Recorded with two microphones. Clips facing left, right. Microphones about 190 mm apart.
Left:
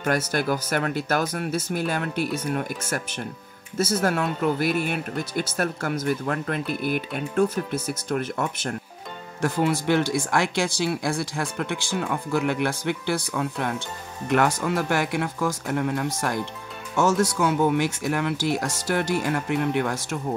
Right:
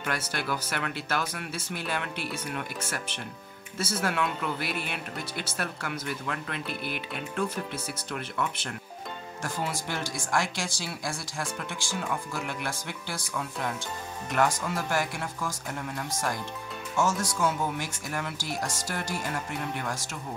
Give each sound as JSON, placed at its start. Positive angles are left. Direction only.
{"t": 0.0, "sound": "speech", "side_deg": 45}
{"t": 9.4, "sound": "speech", "side_deg": 65}